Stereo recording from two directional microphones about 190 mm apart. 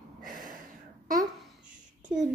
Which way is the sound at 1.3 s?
5° right (ahead or behind).